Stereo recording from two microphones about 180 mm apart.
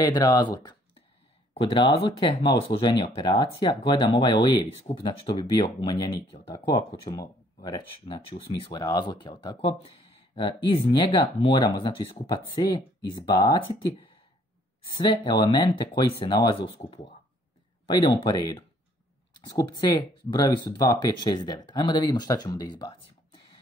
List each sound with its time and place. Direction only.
0.0 s speech: 20° left (ahead or behind)
0.6 s a sound: 25° left (ahead or behind)
1.5 s speech: 30° left (ahead or behind)